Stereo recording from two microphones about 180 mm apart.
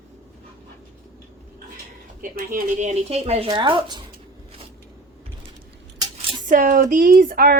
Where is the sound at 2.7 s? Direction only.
40° right (ahead or behind).